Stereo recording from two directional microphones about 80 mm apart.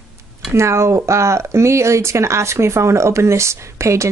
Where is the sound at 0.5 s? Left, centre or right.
Right.